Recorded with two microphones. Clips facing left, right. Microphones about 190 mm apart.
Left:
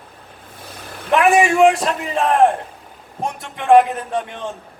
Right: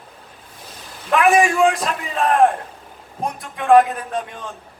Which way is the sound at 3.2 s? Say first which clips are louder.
Even; 25° left (ahead or behind).